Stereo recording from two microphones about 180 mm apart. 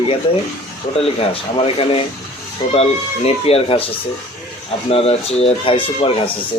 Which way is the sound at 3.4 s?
30° left (ahead or behind).